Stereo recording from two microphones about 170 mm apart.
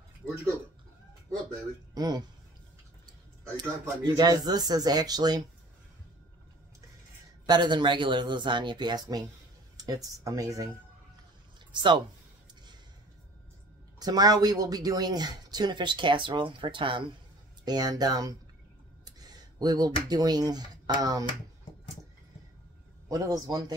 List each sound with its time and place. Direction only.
2.0 s speech: 25° right (ahead or behind)
3.5 s speech: 25° right (ahead or behind)
7.4 s speech: 25° right (ahead or behind)
11.7 s speech: 30° right (ahead or behind)
13.9 s speech: 25° right (ahead or behind)
23.0 s speech: 20° right (ahead or behind)